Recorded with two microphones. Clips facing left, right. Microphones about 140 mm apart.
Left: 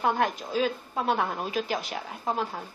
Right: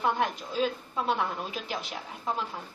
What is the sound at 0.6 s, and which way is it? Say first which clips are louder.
A woman's voice: left 2 dB; 50° left (ahead or behind).